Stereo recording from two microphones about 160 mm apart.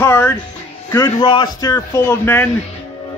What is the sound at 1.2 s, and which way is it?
Speech, 30° left (ahead or behind).